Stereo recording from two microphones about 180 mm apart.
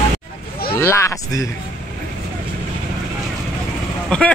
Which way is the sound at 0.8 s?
15° left (ahead or behind).